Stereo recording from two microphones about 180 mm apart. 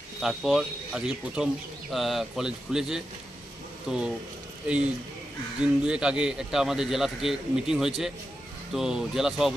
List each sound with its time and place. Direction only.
0.2 s speech: centre (ahead or behind)
5.6 s speech: 5° right (ahead or behind)